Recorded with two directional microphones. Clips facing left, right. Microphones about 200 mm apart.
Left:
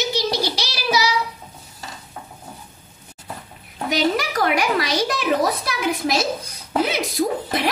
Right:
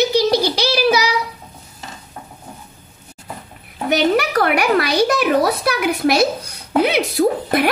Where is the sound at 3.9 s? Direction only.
60° right (ahead or behind).